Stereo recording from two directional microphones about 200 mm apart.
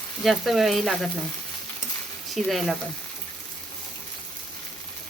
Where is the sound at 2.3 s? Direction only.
Centre (ahead or behind).